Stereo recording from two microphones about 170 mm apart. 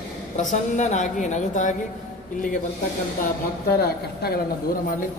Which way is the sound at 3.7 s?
65° left (ahead or behind).